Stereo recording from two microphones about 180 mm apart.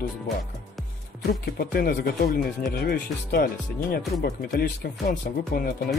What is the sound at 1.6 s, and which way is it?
Speech, 55° left (ahead or behind).